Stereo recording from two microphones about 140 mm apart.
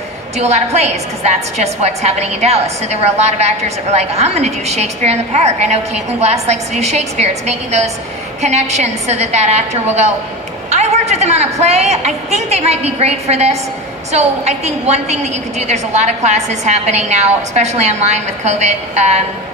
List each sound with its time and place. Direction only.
0.7 s a woman's voice: 50° right (ahead or behind)
10.7 s a sound: 55° right (ahead or behind)
11.6 s a woman's voice: 50° right (ahead or behind)